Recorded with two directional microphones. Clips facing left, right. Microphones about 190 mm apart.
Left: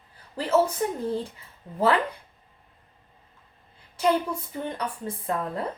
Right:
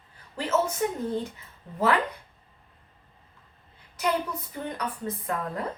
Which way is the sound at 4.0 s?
30° left (ahead or behind).